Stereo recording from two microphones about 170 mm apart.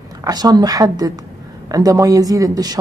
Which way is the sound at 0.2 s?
25° right (ahead or behind).